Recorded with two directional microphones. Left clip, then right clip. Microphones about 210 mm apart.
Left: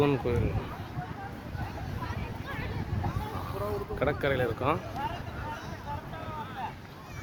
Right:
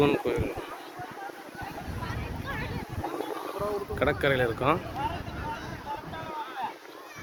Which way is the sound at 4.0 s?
5° left (ahead or behind).